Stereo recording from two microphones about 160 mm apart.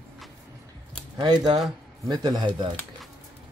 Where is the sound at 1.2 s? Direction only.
25° right (ahead or behind).